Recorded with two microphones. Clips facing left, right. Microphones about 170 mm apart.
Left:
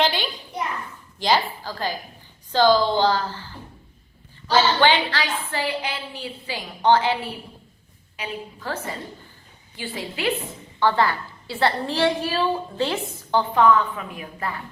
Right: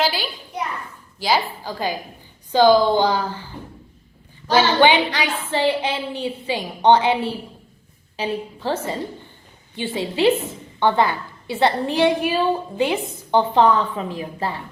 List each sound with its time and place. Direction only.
0.0 s a sound: 5° right (ahead or behind)
1.2 s a woman's voice: 10° right (ahead or behind)
4.5 s a woman's voice: 15° right (ahead or behind)